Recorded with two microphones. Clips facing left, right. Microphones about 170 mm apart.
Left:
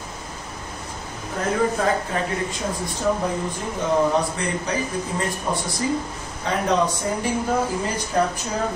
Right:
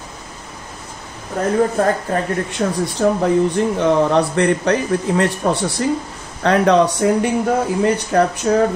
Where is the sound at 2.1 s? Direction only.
50° right (ahead or behind).